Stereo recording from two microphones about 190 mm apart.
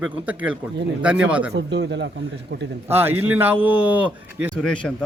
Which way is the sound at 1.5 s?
65° right (ahead or behind).